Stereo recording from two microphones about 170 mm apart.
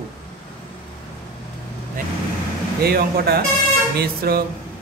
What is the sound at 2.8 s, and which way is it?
Speech, 65° right (ahead or behind).